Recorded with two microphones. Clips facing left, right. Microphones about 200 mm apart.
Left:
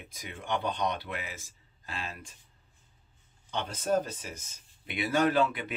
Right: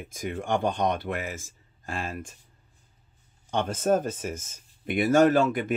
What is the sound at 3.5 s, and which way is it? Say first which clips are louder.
Speech: right 6 dB; 50° right (ahead or behind).